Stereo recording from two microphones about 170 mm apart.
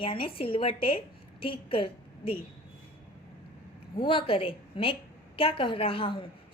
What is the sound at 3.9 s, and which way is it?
Speech, 30° left (ahead or behind).